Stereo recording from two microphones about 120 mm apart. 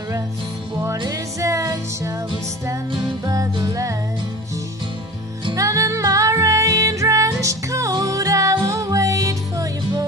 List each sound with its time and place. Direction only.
0.9 s music: 30° right (ahead or behind)
3.5 s music: 30° right (ahead or behind)
5.6 s music: 25° right (ahead or behind)